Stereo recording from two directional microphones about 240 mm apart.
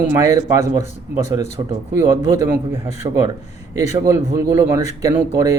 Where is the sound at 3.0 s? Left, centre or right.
Right.